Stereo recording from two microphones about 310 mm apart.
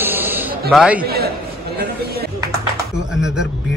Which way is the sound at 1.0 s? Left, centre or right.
Right.